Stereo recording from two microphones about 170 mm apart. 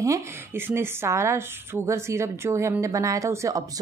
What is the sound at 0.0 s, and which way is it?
A woman's voice, 15° right (ahead or behind).